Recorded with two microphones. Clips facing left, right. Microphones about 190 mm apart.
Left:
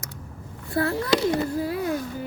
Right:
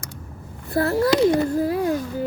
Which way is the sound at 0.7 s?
40° right (ahead or behind).